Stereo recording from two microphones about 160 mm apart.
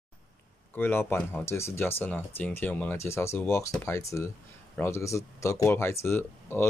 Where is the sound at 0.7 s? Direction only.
15° left (ahead or behind).